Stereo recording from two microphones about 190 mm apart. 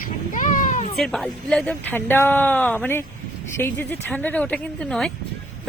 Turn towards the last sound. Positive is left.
turn(degrees=5)  # may be behind; listen again after turning